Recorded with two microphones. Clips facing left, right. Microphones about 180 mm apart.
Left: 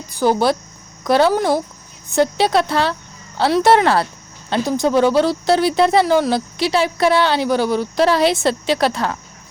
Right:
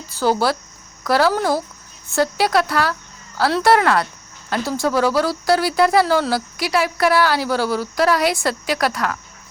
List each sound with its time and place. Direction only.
0.1 s speech: 15° left (ahead or behind)